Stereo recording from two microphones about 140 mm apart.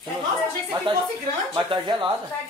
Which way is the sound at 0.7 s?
30° right (ahead or behind).